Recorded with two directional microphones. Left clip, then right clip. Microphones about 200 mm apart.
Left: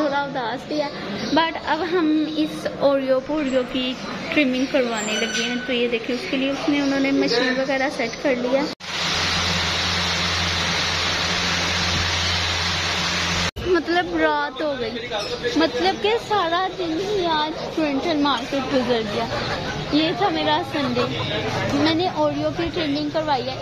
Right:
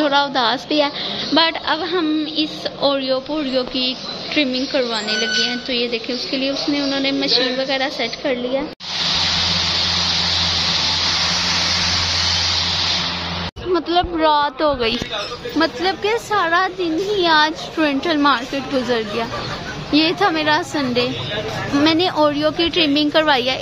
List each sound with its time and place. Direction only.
0.0 s a woman's voice: 5° right (ahead or behind)
13.7 s a woman's voice: centre (ahead or behind)
17.2 s speech: 20° right (ahead or behind)
19.9 s speech: 15° right (ahead or behind)
21.8 s a woman's voice: 15° right (ahead or behind)